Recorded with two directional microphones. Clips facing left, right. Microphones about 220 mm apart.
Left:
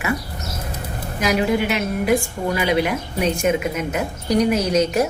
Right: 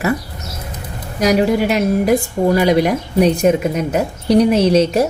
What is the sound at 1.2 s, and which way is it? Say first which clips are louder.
A woman's voice: right 5 dB; 40° right (ahead or behind).